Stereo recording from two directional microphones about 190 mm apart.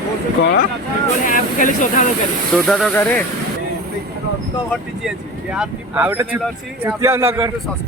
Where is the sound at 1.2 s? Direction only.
45° left (ahead or behind).